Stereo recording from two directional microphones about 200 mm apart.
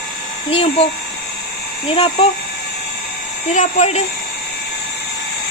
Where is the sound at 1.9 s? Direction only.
30° left (ahead or behind).